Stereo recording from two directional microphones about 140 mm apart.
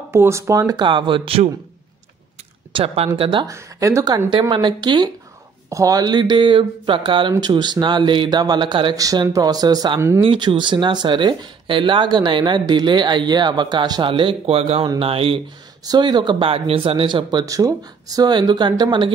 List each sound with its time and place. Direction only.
0.1 s speech: 20° right (ahead or behind)
0.8 s speech: 35° right (ahead or behind)
2.7 s speech: 45° right (ahead or behind)
3.4 s speech: 20° right (ahead or behind)
10.2 s speech: 35° right (ahead or behind)